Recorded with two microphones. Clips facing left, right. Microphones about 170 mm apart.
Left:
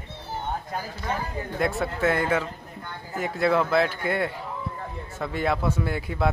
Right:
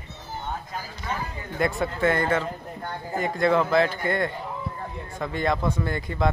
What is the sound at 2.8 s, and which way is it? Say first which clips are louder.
Speech: right 5 dB; 40° right (ahead or behind).